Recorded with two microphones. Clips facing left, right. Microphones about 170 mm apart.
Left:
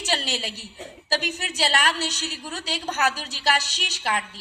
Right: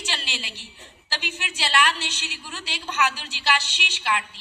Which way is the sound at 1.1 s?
40° left (ahead or behind).